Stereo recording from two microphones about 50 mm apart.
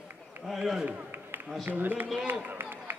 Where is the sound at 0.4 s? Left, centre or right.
Centre.